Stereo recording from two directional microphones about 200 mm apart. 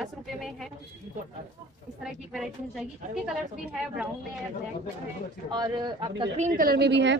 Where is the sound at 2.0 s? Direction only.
Centre (ahead or behind).